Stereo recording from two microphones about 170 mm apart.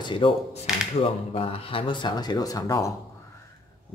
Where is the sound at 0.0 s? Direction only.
30° left (ahead or behind).